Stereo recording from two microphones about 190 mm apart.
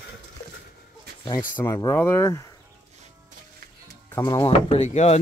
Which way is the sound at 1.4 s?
15° left (ahead or behind).